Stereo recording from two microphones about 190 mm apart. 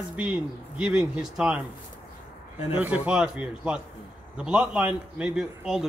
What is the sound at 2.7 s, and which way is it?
Speech, 5° right (ahead or behind).